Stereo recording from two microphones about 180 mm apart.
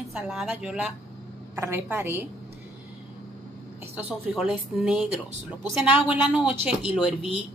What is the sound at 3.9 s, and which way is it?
Speech, 5° right (ahead or behind).